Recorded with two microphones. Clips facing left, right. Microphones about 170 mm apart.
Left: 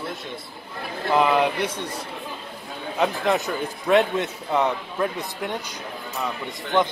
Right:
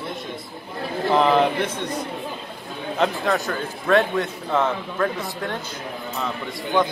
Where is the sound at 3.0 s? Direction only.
20° left (ahead or behind).